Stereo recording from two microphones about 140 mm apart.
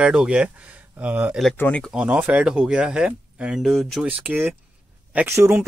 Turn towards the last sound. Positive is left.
turn(degrees=-20)  # may be behind; listen again after turning